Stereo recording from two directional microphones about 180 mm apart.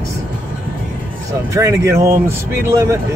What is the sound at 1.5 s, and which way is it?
Speech, 15° right (ahead or behind).